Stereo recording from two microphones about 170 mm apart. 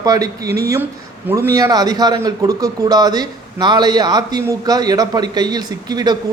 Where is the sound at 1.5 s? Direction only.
20° right (ahead or behind).